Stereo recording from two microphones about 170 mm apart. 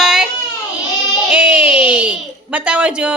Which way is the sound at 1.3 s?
10° right (ahead or behind).